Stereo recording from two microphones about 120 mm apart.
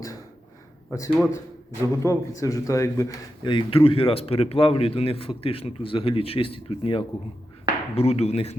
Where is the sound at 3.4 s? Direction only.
45° left (ahead or behind).